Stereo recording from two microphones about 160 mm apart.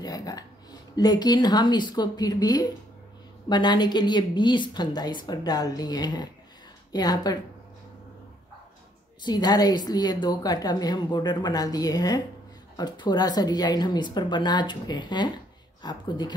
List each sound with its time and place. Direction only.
0.0 s a woman's voice: 25° left (ahead or behind)
9.2 s a woman's voice: 25° left (ahead or behind)